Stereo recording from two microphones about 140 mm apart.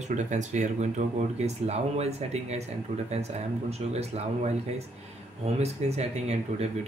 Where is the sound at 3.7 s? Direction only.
50° right (ahead or behind).